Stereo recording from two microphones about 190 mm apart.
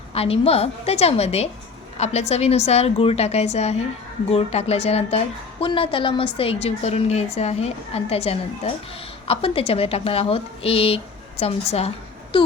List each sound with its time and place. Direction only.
0.1 s a woman's voice: 30° left (ahead or behind)